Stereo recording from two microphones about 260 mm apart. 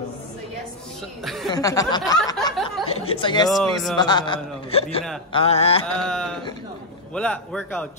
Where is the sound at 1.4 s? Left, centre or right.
Centre.